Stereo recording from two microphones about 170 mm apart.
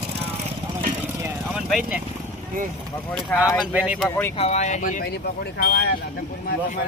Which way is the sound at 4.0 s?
10° left (ahead or behind).